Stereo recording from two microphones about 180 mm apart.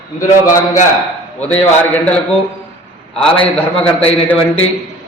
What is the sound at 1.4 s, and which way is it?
Speech, 5° left (ahead or behind).